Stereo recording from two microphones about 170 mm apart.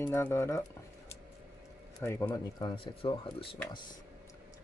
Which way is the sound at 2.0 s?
15° left (ahead or behind).